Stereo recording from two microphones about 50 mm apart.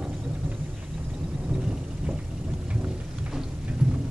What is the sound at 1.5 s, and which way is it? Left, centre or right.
Thunder, centre.